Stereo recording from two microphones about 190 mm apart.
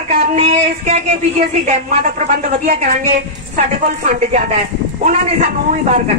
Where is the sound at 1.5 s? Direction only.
40° right (ahead or behind).